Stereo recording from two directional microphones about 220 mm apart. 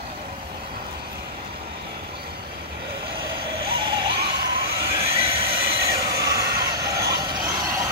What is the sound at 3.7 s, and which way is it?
Vehicle, 20° right (ahead or behind).